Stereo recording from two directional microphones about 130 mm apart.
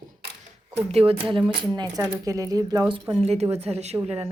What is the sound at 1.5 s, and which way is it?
A woman's voice, 35° right (ahead or behind).